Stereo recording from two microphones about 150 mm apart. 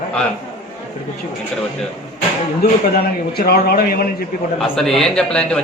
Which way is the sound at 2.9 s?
90° left.